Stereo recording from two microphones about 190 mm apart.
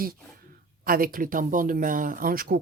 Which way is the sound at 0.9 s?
50° right (ahead or behind).